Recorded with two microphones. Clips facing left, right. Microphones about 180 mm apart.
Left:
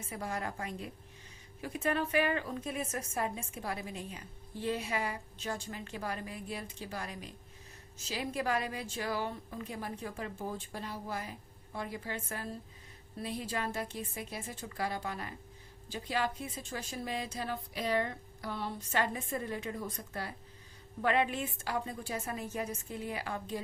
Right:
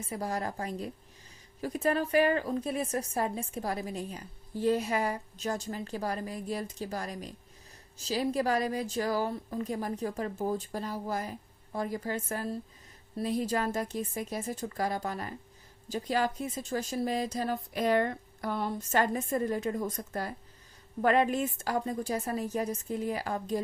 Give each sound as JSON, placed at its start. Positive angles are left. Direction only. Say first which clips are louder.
{"t": 0.0, "sound": "a woman's voice", "louder": "right 4 dB", "side_deg": -35}